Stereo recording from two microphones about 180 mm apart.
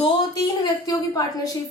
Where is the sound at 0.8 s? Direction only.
20° left (ahead or behind).